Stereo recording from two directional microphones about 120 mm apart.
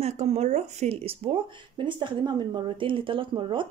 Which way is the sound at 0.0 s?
65° right (ahead or behind).